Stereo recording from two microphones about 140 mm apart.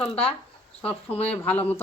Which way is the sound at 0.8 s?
10° left (ahead or behind).